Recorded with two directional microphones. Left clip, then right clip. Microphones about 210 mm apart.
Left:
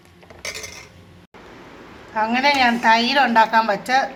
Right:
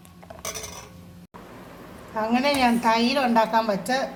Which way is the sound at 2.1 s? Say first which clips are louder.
Left 5 dB; 10° left (ahead or behind).